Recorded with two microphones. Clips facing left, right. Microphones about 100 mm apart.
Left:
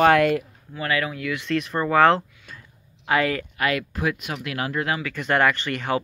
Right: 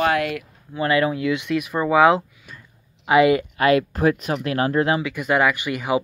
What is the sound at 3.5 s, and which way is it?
Speech, 30° right (ahead or behind).